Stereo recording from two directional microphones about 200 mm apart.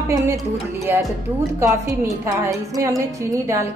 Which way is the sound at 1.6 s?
15° right (ahead or behind).